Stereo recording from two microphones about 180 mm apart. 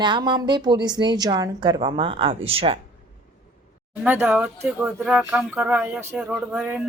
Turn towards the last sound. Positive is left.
turn(degrees=-5)  # may be behind; listen again after turning